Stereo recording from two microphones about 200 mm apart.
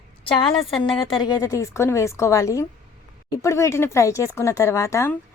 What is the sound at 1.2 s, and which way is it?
Speech, 15° left (ahead or behind).